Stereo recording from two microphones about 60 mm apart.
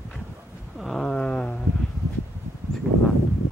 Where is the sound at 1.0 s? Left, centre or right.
Centre.